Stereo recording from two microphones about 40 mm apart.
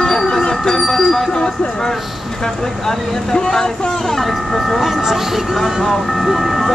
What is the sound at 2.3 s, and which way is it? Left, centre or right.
Speech, centre.